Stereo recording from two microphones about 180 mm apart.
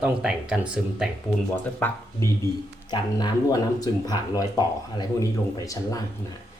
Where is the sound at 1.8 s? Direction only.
10° left (ahead or behind).